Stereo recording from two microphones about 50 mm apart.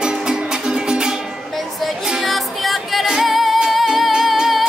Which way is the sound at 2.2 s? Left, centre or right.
Centre.